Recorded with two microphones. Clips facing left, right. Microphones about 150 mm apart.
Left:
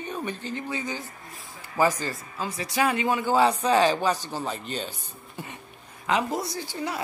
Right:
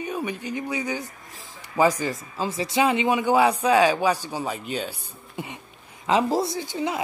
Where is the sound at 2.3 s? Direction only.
25° right (ahead or behind).